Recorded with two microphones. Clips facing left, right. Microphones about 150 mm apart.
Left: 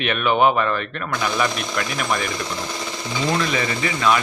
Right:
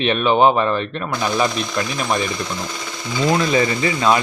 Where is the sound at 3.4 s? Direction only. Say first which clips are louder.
Right 5 dB; 35° right (ahead or behind).